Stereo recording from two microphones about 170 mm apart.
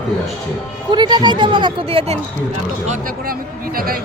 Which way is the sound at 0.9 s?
25° right (ahead or behind).